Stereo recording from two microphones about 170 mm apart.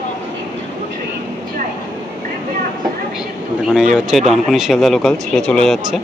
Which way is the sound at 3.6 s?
5° right (ahead or behind).